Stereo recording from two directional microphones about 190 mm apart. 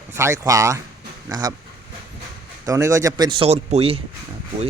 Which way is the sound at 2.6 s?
15° right (ahead or behind).